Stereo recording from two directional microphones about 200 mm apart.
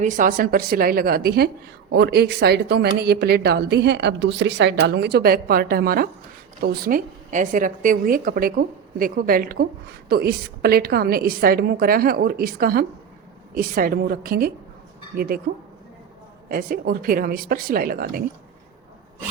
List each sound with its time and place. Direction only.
0.0 s a woman's voice: 40° right (ahead or behind)
16.5 s a woman's voice: 45° right (ahead or behind)